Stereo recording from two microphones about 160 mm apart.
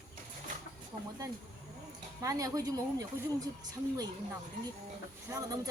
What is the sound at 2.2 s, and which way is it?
Speech, 20° right (ahead or behind).